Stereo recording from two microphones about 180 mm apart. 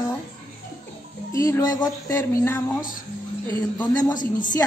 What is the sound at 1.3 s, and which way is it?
Music, 15° left (ahead or behind).